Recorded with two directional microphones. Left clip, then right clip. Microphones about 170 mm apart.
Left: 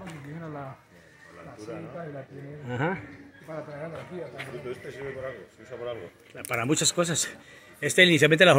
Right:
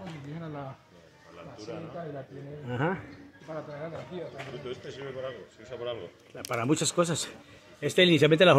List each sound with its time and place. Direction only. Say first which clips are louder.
0.4 s a sound: left 2 dB; 20° right (ahead or behind)
2.6 s speech: left 1 dB; 10° left (ahead or behind)
3.4 s speech: left 1 dB; 30° left (ahead or behind)
5.8 s speech: left 1 dB; centre (ahead or behind)